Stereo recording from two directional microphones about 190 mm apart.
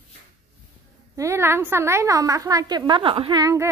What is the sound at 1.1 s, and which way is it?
A woman's voice, 15° right (ahead or behind).